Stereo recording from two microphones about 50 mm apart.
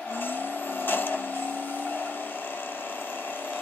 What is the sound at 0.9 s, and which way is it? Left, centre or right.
Vehicle, left.